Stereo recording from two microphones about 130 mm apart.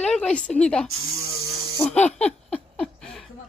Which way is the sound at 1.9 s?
10° left (ahead or behind).